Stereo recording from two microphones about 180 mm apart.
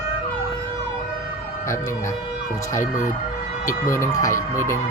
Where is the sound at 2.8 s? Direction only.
45° left (ahead or behind).